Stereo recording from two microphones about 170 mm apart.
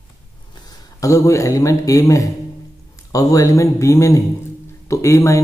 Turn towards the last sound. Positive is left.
turn(degrees=15)  # may be behind; listen again after turning